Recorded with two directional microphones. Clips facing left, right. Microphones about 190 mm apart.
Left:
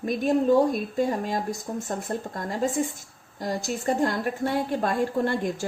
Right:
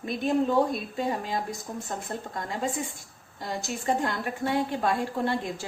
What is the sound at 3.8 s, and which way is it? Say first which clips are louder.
A woman's voice: left 3 dB; 45° left (ahead or behind).